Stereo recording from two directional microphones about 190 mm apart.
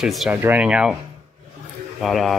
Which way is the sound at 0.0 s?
Centre (ahead or behind).